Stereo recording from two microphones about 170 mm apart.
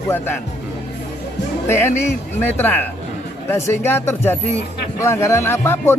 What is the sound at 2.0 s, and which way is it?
Speech, 15° left (ahead or behind).